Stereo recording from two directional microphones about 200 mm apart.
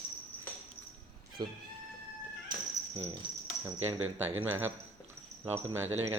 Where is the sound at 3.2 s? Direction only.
25° right (ahead or behind).